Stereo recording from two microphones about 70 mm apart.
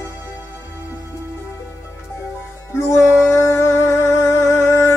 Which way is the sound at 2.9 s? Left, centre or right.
Left.